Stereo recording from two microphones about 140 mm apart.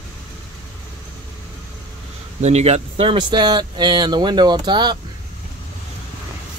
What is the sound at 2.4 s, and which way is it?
Speech, 50° right (ahead or behind).